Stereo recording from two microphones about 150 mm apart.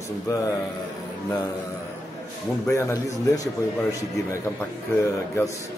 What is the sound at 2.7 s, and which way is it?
Speech, 20° left (ahead or behind).